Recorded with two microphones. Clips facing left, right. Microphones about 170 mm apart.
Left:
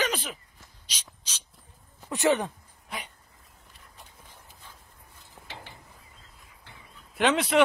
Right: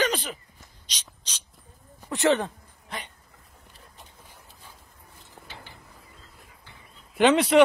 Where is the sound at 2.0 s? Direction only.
20° left (ahead or behind).